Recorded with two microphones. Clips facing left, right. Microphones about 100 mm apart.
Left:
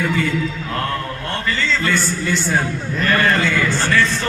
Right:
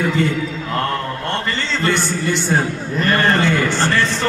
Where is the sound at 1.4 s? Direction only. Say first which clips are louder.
Left 4 dB; 25° right (ahead or behind).